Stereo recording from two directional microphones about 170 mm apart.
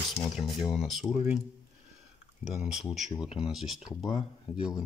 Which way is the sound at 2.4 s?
5° right (ahead or behind).